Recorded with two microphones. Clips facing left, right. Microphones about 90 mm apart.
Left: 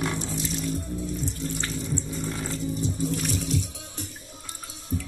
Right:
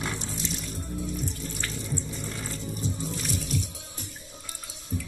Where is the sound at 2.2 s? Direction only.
35° left (ahead or behind).